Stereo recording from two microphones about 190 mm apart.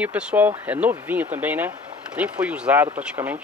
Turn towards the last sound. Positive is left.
turn(degrees=-10)  # may be behind; listen again after turning